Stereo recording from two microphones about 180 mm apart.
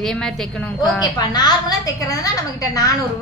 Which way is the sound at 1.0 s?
20° left (ahead or behind).